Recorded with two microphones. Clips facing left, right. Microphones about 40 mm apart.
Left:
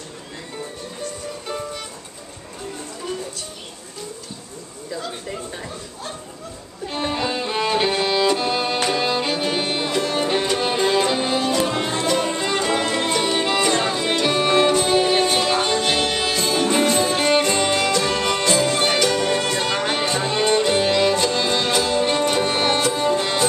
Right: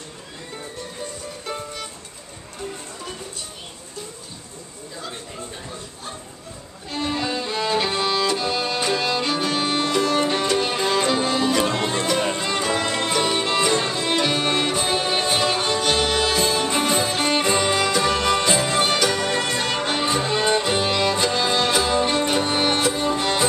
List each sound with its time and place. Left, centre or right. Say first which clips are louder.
7.1 s music: left 1 dB; left; by 17.4 s centre
17.4 s music: left 1 dB; centre